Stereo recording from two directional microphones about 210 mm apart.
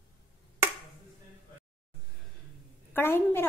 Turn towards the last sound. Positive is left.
turn(degrees=10)  # may be behind; listen again after turning